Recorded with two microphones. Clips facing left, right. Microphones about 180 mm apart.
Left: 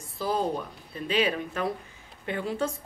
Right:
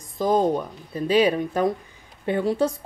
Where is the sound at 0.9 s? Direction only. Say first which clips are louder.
Right 7 dB; 35° right (ahead or behind).